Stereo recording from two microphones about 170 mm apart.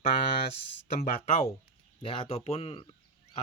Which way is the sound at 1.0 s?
50° left (ahead or behind).